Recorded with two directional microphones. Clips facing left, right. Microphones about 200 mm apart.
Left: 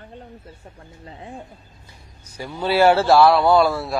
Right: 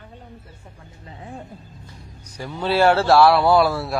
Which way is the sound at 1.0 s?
30° left (ahead or behind).